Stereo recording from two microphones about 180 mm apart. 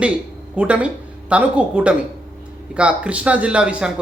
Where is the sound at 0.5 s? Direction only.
5° right (ahead or behind).